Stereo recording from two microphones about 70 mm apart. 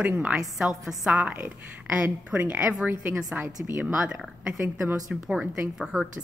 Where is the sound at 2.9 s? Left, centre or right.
Right.